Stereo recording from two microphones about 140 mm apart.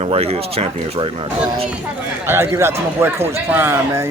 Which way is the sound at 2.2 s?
15° right (ahead or behind).